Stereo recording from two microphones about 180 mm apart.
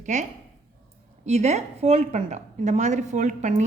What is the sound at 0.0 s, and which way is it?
A woman's voice, 40° right (ahead or behind).